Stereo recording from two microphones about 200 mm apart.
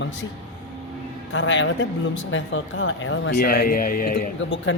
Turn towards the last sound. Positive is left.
turn(degrees=65)  # may be behind; listen again after turning